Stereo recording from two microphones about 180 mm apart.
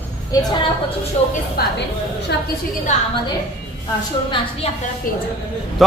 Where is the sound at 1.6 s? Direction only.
60° left (ahead or behind).